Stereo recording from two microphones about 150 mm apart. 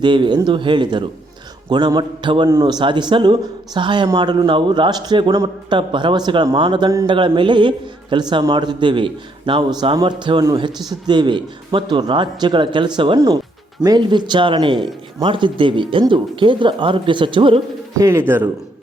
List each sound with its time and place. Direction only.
0.0 s a man's voice: 30° right (ahead or behind)
17.9 s speech: 20° right (ahead or behind)